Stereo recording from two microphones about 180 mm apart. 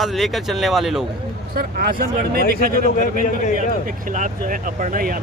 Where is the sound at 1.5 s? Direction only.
55° right (ahead or behind).